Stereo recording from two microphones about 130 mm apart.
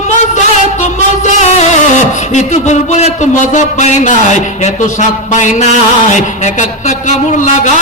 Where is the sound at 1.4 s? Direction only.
60° left (ahead or behind).